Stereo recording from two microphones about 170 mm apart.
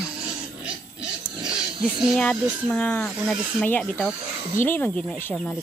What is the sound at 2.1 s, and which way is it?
Speech, 10° left (ahead or behind).